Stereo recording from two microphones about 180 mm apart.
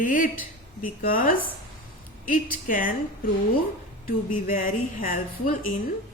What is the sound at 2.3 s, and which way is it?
Speech, 50° left (ahead or behind).